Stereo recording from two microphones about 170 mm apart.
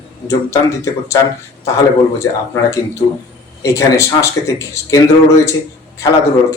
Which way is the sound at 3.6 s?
15° left (ahead or behind).